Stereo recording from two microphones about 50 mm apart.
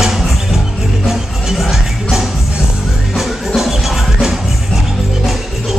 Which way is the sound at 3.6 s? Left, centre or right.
Centre.